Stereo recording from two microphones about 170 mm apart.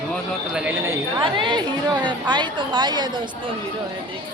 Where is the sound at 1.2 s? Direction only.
25° right (ahead or behind).